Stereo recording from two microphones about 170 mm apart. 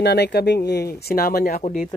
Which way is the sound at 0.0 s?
80° left.